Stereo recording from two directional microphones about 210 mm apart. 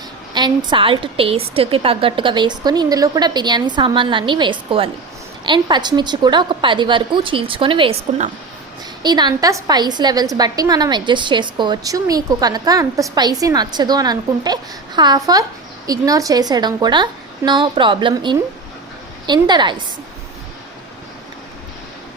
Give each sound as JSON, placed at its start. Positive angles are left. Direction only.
{"t": 0.3, "sound": "a woman's voice", "side_deg": -20}